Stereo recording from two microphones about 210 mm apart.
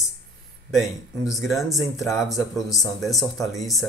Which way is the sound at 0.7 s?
Centre (ahead or behind).